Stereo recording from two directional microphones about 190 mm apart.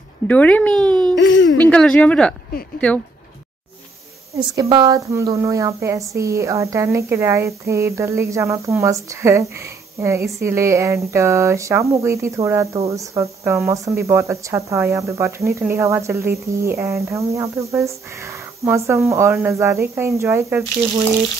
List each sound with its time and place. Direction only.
0.3 s speech: 10° left (ahead or behind)
1.1 s speech: 70° left (ahead or behind)
1.6 s speech: 5° left (ahead or behind)
4.3 s speech: 20° right (ahead or behind)